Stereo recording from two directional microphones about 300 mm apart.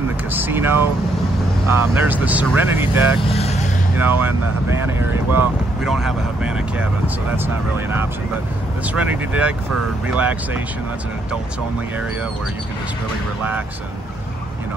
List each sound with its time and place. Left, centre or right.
0.3 s speech: centre
3.3 s vehicle: left
4.0 s speech: centre